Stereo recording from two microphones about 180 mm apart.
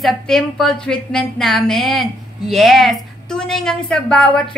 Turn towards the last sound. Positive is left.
turn(degrees=5)  # may be behind; listen again after turning